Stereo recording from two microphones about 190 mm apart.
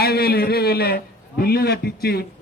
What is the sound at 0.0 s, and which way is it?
A man's voice, 55° left (ahead or behind).